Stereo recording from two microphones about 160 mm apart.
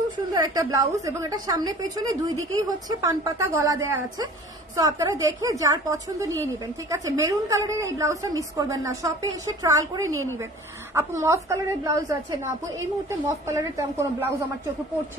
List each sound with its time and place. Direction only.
0.3 s a woman's voice: 20° right (ahead or behind)